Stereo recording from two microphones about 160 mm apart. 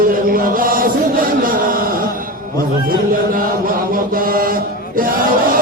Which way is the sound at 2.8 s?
60° right (ahead or behind).